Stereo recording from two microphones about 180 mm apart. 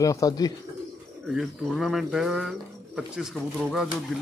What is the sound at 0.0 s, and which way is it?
Speech, 20° left (ahead or behind).